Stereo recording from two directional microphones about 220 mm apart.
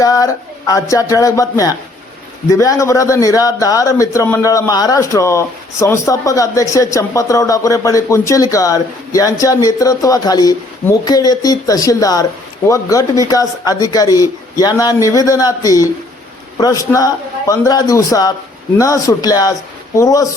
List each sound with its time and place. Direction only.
0.0 s a man's voice: 15° left (ahead or behind)